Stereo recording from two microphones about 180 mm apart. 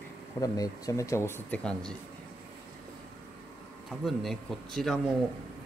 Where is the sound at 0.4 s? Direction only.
20° left (ahead or behind); by 2.0 s 5° left (ahead or behind).